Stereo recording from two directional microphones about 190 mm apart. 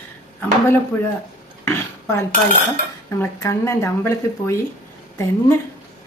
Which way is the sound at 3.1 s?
15° left (ahead or behind).